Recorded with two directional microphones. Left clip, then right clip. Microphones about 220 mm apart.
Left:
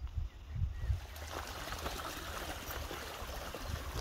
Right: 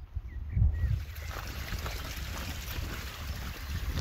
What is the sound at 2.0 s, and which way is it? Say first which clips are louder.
Vehicle: right 1 dB; 30° left (ahead or behind).